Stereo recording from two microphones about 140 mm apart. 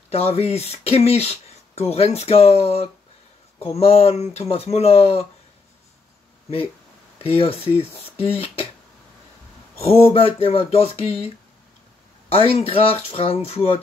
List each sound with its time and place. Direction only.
0.1 s speech: 45° left (ahead or behind)
7.2 s speech: 45° left (ahead or behind)
9.8 s speech: 45° left (ahead or behind)